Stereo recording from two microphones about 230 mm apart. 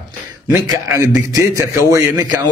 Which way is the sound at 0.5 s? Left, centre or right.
Centre.